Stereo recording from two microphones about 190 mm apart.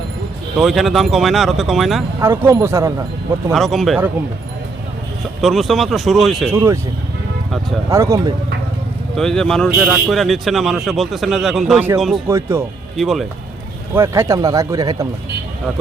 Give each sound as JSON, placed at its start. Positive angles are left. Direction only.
{"t": 0.5, "sound": "speech", "side_deg": 0}
{"t": 2.2, "sound": "speech", "side_deg": -15}
{"t": 3.5, "sound": "speech", "side_deg": 0}
{"t": 5.4, "sound": "speech", "side_deg": 0}
{"t": 6.5, "sound": "speech", "side_deg": -15}
{"t": 7.9, "sound": "speech", "side_deg": -15}
{"t": 9.1, "sound": "speech", "side_deg": 5}
{"t": 12.3, "sound": "speech", "side_deg": -15}
{"t": 13.0, "sound": "speech", "side_deg": 0}
{"t": 13.9, "sound": "speech", "side_deg": -15}